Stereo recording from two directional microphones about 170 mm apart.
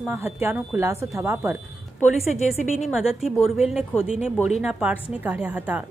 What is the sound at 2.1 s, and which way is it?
Speech, 40° left (ahead or behind).